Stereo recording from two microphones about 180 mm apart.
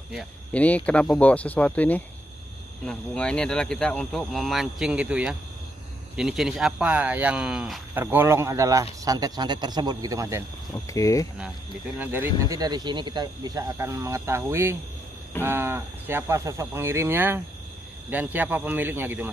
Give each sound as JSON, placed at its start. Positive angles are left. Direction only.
{"t": 0.1, "sound": "a man's voice", "side_deg": 0}
{"t": 10.9, "sound": "speech", "side_deg": 20}
{"t": 12.0, "sound": "speech", "side_deg": -10}